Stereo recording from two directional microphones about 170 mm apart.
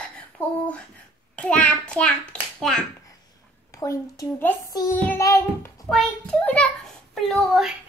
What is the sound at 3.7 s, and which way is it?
Speech, 20° left (ahead or behind).